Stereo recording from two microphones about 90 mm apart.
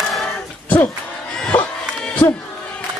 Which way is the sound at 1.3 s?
10° left (ahead or behind).